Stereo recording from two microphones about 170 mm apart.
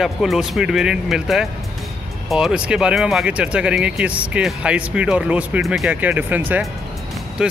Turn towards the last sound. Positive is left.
turn(degrees=-5)  # may be behind; listen again after turning